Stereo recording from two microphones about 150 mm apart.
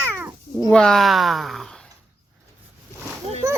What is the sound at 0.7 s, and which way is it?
Speech, 5° left (ahead or behind).